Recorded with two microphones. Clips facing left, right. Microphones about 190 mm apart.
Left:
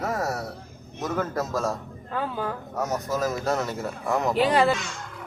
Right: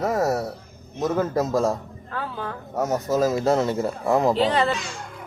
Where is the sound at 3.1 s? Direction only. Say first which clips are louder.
Right 8 dB; 25° right (ahead or behind).